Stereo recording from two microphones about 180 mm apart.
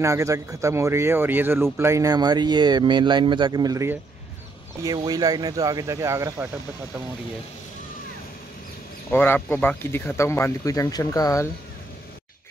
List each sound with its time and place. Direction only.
0.0 s speech: 15° right (ahead or behind)
9.1 s speech: 10° left (ahead or behind)